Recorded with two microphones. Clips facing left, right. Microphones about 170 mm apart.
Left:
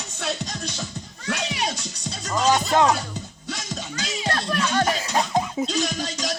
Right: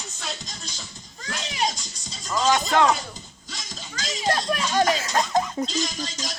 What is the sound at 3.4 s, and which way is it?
Music, 65° left (ahead or behind).